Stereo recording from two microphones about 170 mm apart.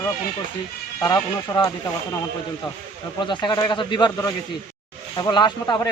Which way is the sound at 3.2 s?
25° left (ahead or behind).